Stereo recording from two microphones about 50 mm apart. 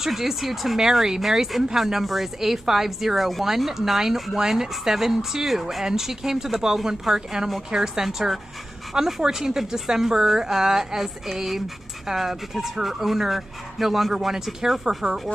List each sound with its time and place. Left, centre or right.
0.0 s speech: centre